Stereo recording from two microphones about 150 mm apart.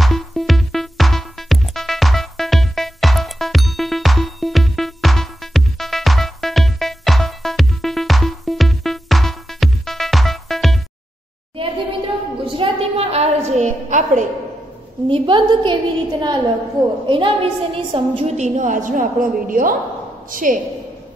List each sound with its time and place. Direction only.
0.0 s music: centre (ahead or behind)
11.5 s a sound: 35° right (ahead or behind); by 14.2 s 55° right (ahead or behind)
15.0 s a woman's voice: 35° right (ahead or behind); by 20.5 s 65° right (ahead or behind)